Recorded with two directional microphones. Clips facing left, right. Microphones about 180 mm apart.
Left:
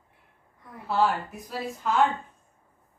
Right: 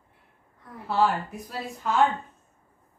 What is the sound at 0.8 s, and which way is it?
Speech, centre (ahead or behind).